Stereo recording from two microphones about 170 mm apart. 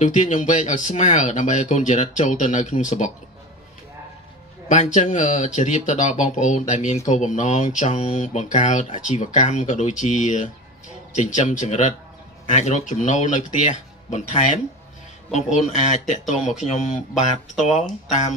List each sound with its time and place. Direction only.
0.0 s speech: 45° left (ahead or behind)
4.6 s speech: 45° left (ahead or behind)
15.7 s speech: 45° left (ahead or behind)